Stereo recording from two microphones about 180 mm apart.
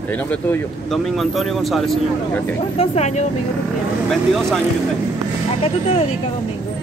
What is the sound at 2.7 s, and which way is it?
Speech, 35° left (ahead or behind).